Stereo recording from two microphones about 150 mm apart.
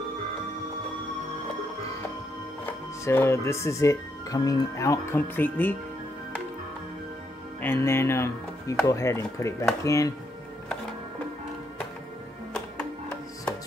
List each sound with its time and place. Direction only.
2.6 s speech: 15° left (ahead or behind)
7.6 s speech: 15° left (ahead or behind)
12.5 s music: 10° left (ahead or behind)